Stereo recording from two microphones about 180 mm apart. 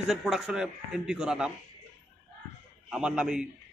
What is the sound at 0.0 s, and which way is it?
A man's voice, centre (ahead or behind).